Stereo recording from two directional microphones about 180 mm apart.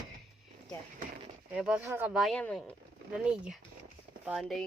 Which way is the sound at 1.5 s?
5° right (ahead or behind).